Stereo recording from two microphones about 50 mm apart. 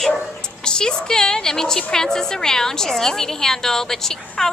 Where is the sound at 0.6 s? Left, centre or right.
Centre.